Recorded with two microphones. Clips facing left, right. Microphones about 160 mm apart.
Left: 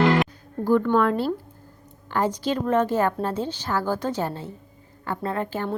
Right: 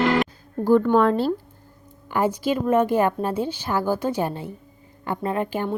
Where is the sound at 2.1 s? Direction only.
10° right (ahead or behind).